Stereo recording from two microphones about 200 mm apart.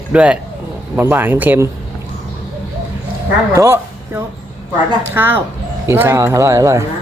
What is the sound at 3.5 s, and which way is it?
Speech, 15° right (ahead or behind).